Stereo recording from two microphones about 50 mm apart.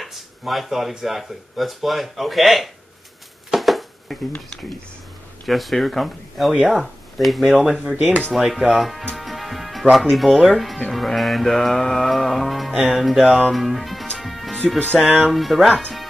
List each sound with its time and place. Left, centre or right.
0.0 s speech: centre
3.4 s a sound: centre
5.4 s speech: centre
7.6 s speech: centre
7.9 s speech: right
8.4 s speech: centre
9.1 s tick-tock: centre
9.9 s speech: centre
14.1 s music: centre
15.3 s speech: centre